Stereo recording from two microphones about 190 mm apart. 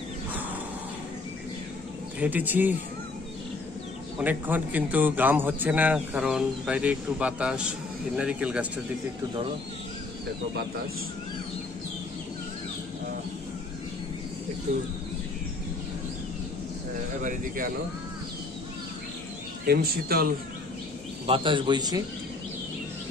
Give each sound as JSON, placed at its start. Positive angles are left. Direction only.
{"t": 2.1, "sound": "a man's voice", "side_deg": -10}
{"t": 4.2, "sound": "a man's voice", "side_deg": -10}
{"t": 17.2, "sound": "speech", "side_deg": -45}
{"t": 19.6, "sound": "speech", "side_deg": -50}
{"t": 21.3, "sound": "speech", "side_deg": -25}